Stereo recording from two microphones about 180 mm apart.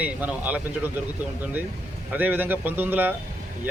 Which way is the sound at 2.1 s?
10° right (ahead or behind).